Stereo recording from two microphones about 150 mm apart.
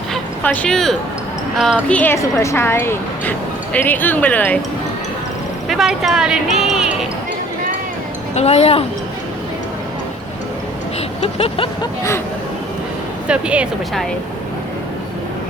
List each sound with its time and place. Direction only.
0.1 s a sound: 10° left (ahead or behind)
1.5 s speech: centre (ahead or behind)
1.9 s speech: 10° left (ahead or behind)
5.6 s speech: 5° right (ahead or behind)
8.4 s speech: 45° left (ahead or behind)
11.2 s vehicle: 40° left (ahead or behind)
13.2 s speech: 5° right (ahead or behind)